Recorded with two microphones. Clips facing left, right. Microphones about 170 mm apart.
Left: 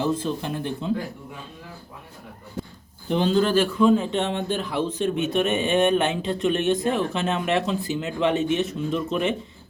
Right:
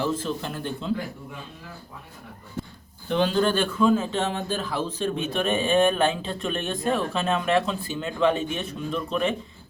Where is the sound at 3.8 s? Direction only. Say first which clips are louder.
Even; 20° left (ahead or behind).